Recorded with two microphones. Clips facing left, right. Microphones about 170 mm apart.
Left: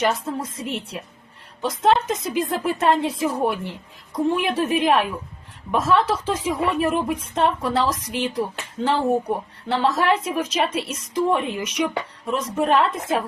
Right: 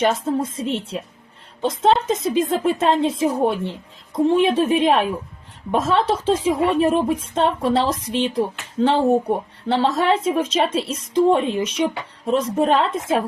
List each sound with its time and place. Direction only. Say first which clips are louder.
0.0 s speech: right 4 dB; 25° right (ahead or behind)